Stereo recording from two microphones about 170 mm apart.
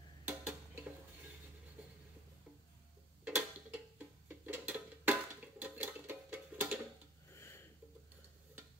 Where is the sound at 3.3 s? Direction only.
5° right (ahead or behind).